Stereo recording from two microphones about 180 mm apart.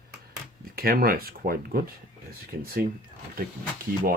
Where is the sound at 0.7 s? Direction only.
55° right (ahead or behind).